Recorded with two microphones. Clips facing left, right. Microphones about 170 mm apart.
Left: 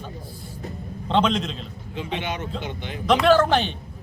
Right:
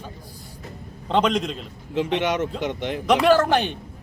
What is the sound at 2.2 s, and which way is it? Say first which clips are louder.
Speech: right 6 dB; 80° right.